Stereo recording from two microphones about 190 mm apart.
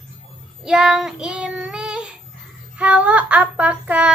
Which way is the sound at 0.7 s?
5° right (ahead or behind).